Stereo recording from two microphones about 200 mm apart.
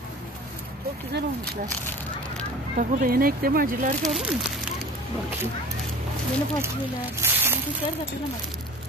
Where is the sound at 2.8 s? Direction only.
45° right (ahead or behind).